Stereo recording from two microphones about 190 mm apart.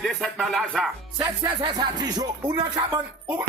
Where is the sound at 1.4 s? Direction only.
20° right (ahead or behind).